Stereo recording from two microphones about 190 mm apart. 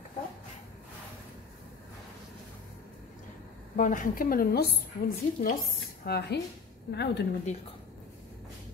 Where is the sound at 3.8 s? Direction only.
45° left (ahead or behind).